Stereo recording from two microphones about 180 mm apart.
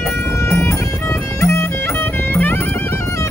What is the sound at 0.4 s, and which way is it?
Music, 15° left (ahead or behind).